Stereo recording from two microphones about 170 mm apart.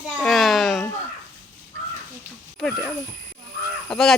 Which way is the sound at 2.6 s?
Centre (ahead or behind).